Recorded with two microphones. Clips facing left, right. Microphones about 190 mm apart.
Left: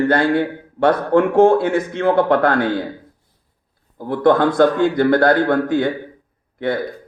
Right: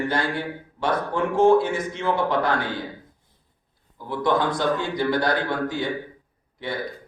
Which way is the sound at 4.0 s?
55° left (ahead or behind).